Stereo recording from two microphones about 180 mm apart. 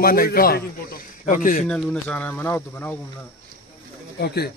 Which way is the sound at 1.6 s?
5° left (ahead or behind).